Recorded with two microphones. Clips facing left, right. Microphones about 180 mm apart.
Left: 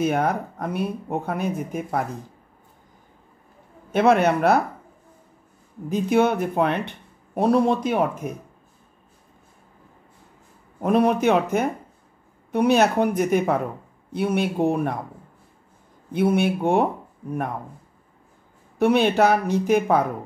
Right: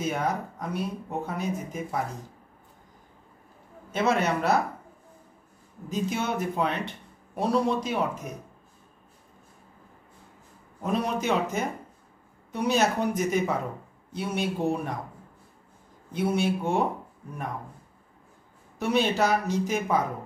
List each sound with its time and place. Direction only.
0.0 s speech: 60° left (ahead or behind)
3.9 s speech: 60° left (ahead or behind)
5.9 s speech: 60° left (ahead or behind)
10.8 s speech: 60° left (ahead or behind)
16.1 s speech: 60° left (ahead or behind)
18.8 s speech: 60° left (ahead or behind)